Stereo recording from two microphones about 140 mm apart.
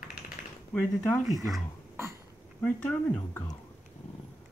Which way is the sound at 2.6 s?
10° left (ahead or behind).